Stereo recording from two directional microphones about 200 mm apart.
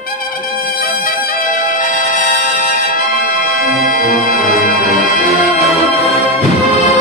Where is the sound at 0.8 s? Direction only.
40° left (ahead or behind).